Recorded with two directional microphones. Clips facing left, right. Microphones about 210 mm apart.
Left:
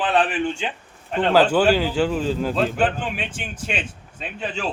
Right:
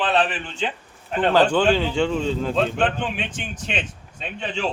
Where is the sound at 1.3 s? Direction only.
5° left (ahead or behind).